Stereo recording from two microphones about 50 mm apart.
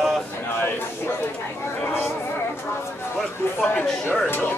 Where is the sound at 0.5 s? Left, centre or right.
Left.